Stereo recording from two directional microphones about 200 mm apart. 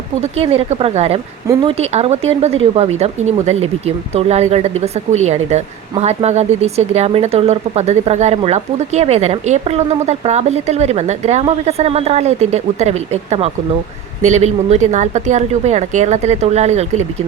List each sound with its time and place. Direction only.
0.2 s speech: 30° right (ahead or behind)